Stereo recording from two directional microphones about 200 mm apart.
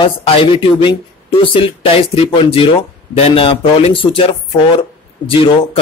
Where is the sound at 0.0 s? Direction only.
25° left (ahead or behind).